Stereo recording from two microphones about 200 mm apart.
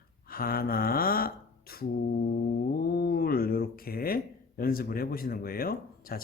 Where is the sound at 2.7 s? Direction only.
50° left (ahead or behind).